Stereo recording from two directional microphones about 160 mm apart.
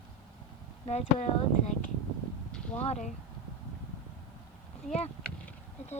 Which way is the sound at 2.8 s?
45° left (ahead or behind).